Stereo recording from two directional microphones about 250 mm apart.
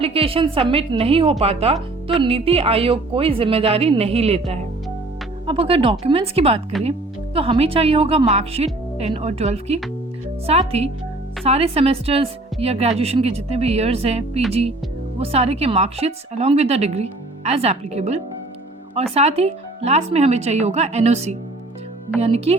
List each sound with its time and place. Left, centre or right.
0.0 s speech: right